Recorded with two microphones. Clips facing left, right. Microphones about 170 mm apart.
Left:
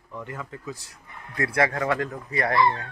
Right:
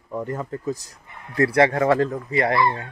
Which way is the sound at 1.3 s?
30° right (ahead or behind).